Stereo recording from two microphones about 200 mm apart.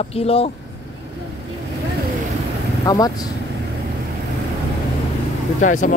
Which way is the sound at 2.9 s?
20° left (ahead or behind).